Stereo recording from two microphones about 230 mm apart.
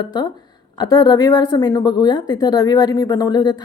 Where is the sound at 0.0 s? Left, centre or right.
Centre.